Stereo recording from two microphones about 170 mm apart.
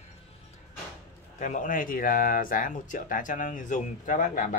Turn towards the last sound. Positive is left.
turn(degrees=50)  # may be behind; listen again after turning